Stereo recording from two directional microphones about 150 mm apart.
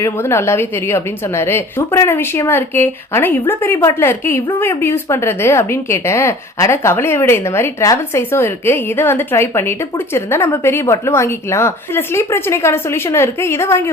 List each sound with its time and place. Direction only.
0.0 s a woman's voice: 15° left (ahead or behind)